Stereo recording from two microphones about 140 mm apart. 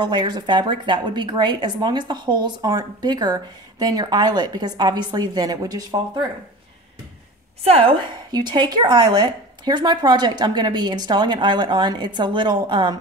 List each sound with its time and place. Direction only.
0.0 s a woman's voice: 30° right (ahead or behind)
7.6 s a woman's voice: 45° right (ahead or behind)
8.3 s a woman's voice: 30° right (ahead or behind)